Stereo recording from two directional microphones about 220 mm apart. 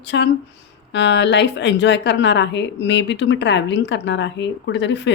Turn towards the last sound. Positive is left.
turn(degrees=55)  # may be behind; listen again after turning